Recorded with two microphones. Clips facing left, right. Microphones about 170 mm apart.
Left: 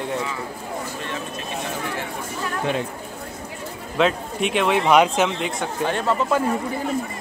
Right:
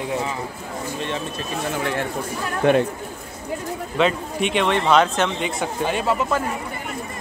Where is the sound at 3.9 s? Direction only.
Centre (ahead or behind).